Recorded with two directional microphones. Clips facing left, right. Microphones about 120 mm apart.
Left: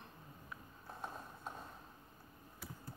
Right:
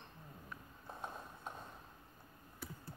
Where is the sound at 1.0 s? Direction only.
Centre (ahead or behind).